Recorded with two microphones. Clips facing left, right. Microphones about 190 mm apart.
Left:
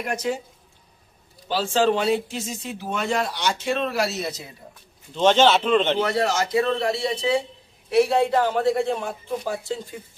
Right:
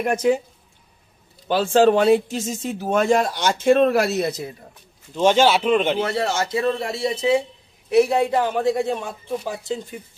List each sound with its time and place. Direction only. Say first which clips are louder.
0.0 s speech: right 7 dB; 55° right (ahead or behind)
1.5 s speech: right 5 dB; 55° right (ahead or behind)
5.1 s a man's voice: right 1 dB; 10° right (ahead or behind)
6.2 s a man's voice: even; 30° right (ahead or behind)